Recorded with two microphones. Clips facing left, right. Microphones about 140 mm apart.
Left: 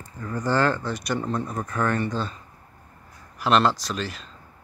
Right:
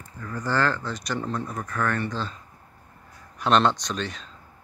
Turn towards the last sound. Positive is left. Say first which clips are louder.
# even
turn(degrees=5)  # may be behind; listen again after turning